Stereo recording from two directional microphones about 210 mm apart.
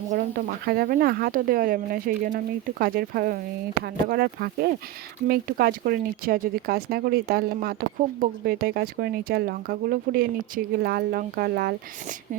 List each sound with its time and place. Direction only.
0.1 s speech: 45° right (ahead or behind)